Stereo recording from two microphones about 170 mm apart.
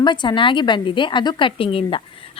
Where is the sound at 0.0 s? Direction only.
25° left (ahead or behind).